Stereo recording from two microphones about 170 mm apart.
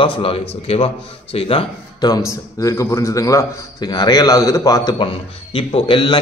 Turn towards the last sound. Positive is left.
turn(degrees=30)  # may be behind; listen again after turning